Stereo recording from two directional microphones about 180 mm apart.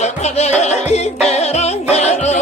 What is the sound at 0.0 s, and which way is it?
Music, 40° left (ahead or behind).